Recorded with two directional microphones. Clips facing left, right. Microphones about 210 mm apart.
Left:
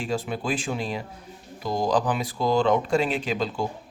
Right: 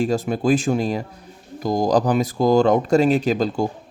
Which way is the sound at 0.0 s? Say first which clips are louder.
Right 8 dB; 40° right (ahead or behind).